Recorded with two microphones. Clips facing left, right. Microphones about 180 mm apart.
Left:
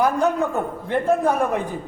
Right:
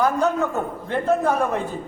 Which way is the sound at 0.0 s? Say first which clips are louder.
Left 1 dB; 15° left (ahead or behind).